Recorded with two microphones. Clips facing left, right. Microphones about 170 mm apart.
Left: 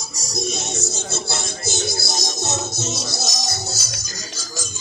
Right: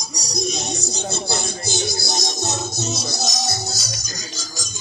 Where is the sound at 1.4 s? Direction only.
Centre (ahead or behind).